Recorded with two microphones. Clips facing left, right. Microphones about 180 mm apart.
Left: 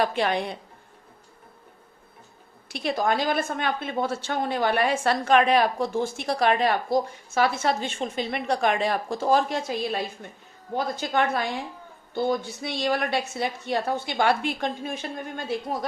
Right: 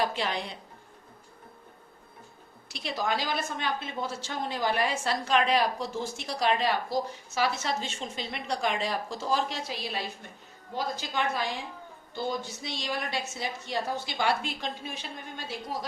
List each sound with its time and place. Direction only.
0.0 s a woman's voice: 55° left (ahead or behind)
2.6 s a woman's voice: 55° left (ahead or behind)